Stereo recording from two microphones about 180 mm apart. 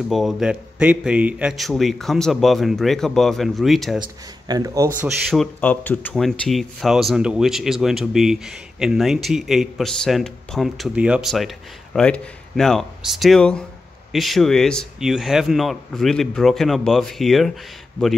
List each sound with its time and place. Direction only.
0.1 s speech: centre (ahead or behind)
4.5 s speech: 20° right (ahead or behind)
5.0 s speech: centre (ahead or behind)